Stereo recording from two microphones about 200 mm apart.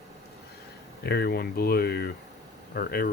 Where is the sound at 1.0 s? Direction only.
55° left (ahead or behind).